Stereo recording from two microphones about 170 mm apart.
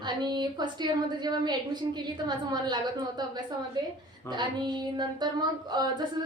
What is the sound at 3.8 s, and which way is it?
A woman's voice, 25° right (ahead or behind).